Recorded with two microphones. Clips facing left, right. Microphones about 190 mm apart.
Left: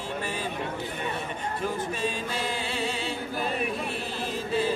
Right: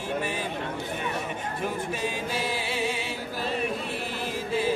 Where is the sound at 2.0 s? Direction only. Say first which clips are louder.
Right 1 dB; 10° right (ahead or behind).